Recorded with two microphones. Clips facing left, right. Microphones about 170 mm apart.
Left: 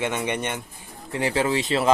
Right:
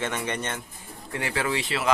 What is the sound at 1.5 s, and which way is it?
Speech, 35° left (ahead or behind).